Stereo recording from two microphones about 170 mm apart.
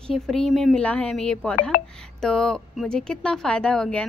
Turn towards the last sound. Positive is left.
turn(degrees=5)  # may be behind; listen again after turning